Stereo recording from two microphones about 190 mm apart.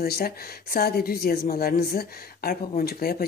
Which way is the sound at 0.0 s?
50° left (ahead or behind).